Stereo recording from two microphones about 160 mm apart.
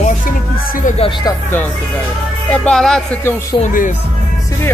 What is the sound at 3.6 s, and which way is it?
Speech, 50° left (ahead or behind).